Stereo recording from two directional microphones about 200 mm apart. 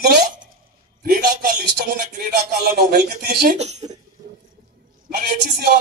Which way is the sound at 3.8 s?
20° right (ahead or behind).